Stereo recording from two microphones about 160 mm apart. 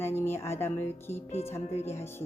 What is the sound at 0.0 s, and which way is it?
Speech, 15° left (ahead or behind).